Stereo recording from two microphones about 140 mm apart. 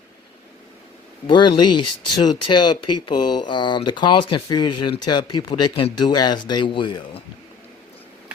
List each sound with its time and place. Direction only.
1.3 s speech: 30° left (ahead or behind)